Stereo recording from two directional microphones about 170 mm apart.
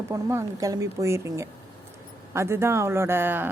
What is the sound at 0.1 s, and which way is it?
Speech, 15° right (ahead or behind).